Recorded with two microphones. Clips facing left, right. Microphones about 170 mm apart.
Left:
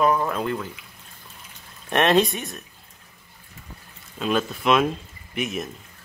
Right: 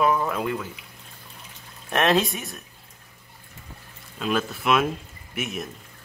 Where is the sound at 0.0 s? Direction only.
Centre (ahead or behind).